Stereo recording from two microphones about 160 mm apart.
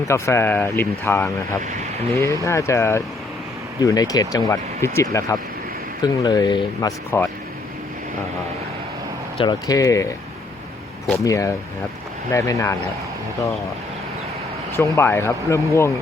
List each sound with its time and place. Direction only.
0.1 s speech: 15° left (ahead or behind)
9.4 s speech: 25° left (ahead or behind)
11.2 s speech: 20° left (ahead or behind)
14.8 s speech: 15° left (ahead or behind)